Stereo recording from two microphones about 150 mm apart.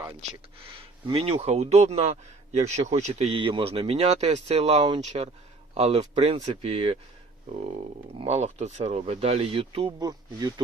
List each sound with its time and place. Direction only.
0.8 s a man's voice: 40° right (ahead or behind)
8.2 s a man's voice: 45° right (ahead or behind); by 10.5 s 25° right (ahead or behind)